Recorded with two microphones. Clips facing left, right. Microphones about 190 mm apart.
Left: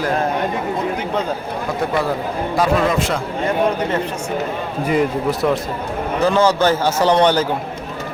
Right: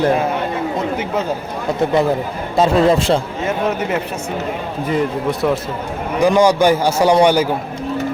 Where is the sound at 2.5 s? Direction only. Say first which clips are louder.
Right 5 dB; 25° right (ahead or behind).